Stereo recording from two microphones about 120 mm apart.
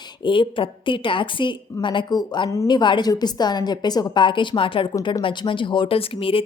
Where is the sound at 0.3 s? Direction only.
45° left (ahead or behind).